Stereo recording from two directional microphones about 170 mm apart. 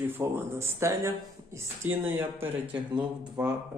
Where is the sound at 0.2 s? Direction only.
15° right (ahead or behind).